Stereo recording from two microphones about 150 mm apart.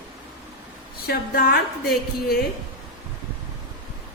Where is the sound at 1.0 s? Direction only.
90° left.